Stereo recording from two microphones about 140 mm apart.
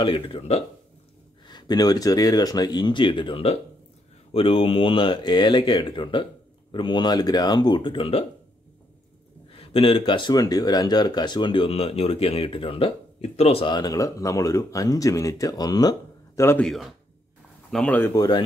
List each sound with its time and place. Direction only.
0.0 s speech: 40° left (ahead or behind)
1.5 s speech: 30° left (ahead or behind)
9.6 s speech: 40° left (ahead or behind)
13.7 s speech: 30° left (ahead or behind)
16.4 s speech: 5° left (ahead or behind)
18.1 s speech: 30° left (ahead or behind)